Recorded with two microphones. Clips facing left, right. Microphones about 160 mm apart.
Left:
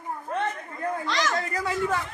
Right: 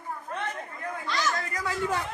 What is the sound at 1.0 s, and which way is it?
Speech, 85° left.